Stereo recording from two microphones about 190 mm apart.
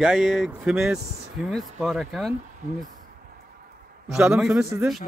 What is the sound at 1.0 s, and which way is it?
Speech, 35° right (ahead or behind).